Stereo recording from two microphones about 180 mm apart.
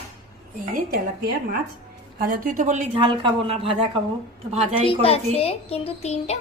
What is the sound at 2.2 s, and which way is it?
Speech, 50° right (ahead or behind).